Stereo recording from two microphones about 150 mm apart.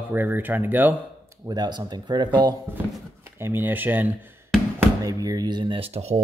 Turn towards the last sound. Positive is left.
turn(degrees=-45)  # may be behind; listen again after turning